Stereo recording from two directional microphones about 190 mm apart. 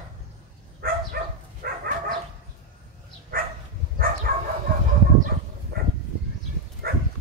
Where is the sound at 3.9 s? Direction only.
50° right (ahead or behind).